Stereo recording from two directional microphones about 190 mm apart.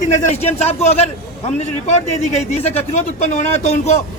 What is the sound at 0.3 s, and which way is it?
Speech, 35° left (ahead or behind).